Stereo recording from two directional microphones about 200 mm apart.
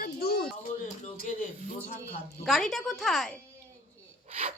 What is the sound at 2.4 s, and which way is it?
Speech, centre (ahead or behind).